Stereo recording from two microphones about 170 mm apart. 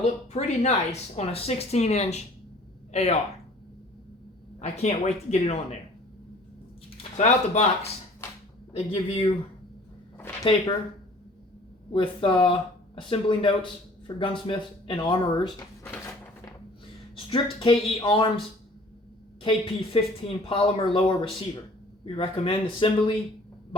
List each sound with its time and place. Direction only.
0.0 s speech: 40° left (ahead or behind)
4.6 s speech: 40° left (ahead or behind)
6.9 s speech: 45° left (ahead or behind)
11.9 s speech: 30° left (ahead or behind)
17.3 s speech: 30° left (ahead or behind)
19.4 s speech: 30° left (ahead or behind)